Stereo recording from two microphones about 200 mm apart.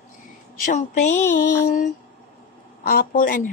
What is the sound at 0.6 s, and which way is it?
Speech, 35° left (ahead or behind).